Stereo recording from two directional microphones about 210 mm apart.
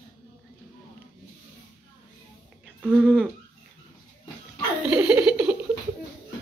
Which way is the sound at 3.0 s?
5° left (ahead or behind).